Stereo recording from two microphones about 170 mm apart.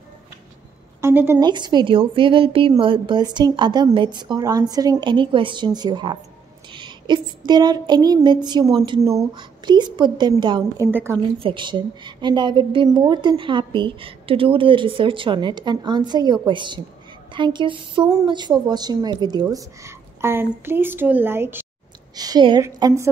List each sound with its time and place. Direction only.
1.0 s a woman's voice: 15° right (ahead or behind)
1.4 s a woman's voice: 25° right (ahead or behind)
6.7 s a sound: 25° right (ahead or behind)
10.6 s a woman's voice: 15° right (ahead or behind)
11.3 s a woman's voice: 30° right (ahead or behind); by 21.6 s 10° right (ahead or behind)
22.1 s a woman's voice: 25° right (ahead or behind)